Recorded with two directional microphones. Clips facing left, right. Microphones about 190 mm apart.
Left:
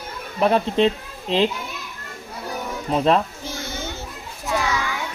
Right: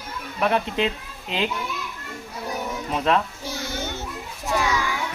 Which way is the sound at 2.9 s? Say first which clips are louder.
Left 4 dB; 30° left (ahead or behind).